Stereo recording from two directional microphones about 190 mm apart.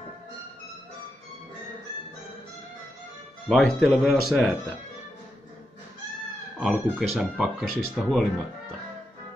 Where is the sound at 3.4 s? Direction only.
Centre (ahead or behind).